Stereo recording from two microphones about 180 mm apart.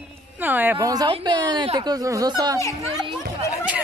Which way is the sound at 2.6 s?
15° left (ahead or behind).